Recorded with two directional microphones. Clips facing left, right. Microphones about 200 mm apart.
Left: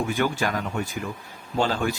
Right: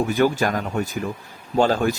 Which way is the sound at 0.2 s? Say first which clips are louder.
Right 5 dB; 40° right (ahead or behind).